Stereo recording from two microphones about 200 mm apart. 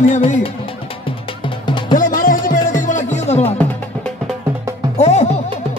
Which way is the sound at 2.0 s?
45° left (ahead or behind).